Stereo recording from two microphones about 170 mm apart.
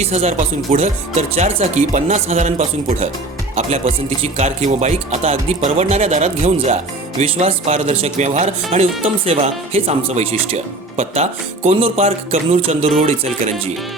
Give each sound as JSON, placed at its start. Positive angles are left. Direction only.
{"t": 0.0, "sound": "speech", "side_deg": -40}